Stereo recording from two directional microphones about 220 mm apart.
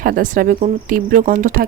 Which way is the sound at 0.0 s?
40° right (ahead or behind).